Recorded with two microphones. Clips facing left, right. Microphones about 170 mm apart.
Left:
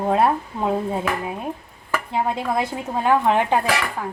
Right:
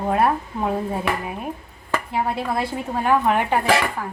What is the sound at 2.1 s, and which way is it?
A woman's voice, 20° left (ahead or behind).